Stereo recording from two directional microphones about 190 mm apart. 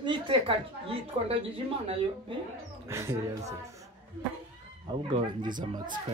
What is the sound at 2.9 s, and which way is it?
Speech, 15° right (ahead or behind).